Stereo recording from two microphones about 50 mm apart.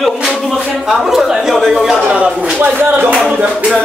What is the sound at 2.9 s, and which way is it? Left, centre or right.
Speech, right.